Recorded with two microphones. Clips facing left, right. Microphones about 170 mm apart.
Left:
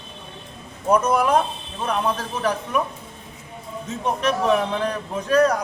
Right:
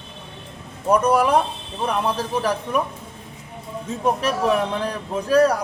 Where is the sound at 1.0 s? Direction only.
10° right (ahead or behind).